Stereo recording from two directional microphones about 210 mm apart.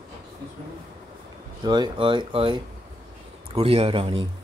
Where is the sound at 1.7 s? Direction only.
20° right (ahead or behind).